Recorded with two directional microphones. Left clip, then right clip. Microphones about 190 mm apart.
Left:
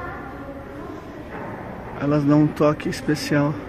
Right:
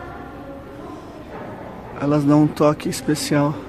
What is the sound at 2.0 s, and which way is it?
Speech, 15° right (ahead or behind).